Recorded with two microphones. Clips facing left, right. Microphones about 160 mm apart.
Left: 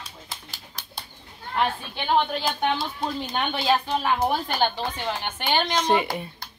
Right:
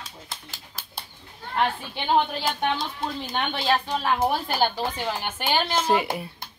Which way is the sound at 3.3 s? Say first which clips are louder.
Left 1 dB; centre (ahead or behind).